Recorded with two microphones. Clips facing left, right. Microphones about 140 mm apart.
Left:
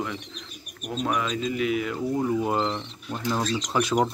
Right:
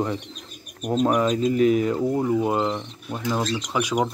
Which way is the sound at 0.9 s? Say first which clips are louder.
Right 7 dB; 35° right (ahead or behind).